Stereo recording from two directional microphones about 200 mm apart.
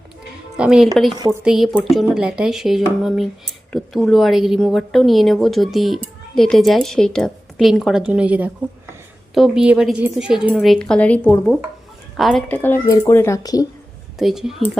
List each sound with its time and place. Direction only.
0.5 s a woman's voice: 5° right (ahead or behind)
1.1 s a woman's voice: 20° right (ahead or behind)
1.5 s a woman's voice: 5° right (ahead or behind); by 13.7 s 20° left (ahead or behind)
14.2 s a woman's voice: centre (ahead or behind)